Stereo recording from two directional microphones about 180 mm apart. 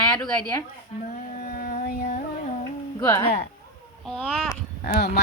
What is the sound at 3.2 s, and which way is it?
Speech, 35° left (ahead or behind).